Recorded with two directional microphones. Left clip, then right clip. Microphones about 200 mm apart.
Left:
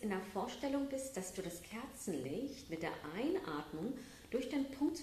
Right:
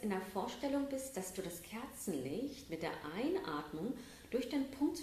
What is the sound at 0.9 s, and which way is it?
Speech, 15° right (ahead or behind).